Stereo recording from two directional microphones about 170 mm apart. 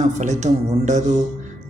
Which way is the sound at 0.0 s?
45° right (ahead or behind).